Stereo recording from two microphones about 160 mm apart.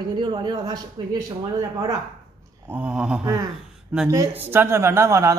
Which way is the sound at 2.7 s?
10° right (ahead or behind).